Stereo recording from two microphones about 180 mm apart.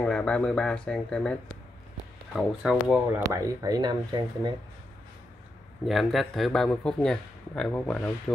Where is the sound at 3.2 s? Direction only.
20° right (ahead or behind).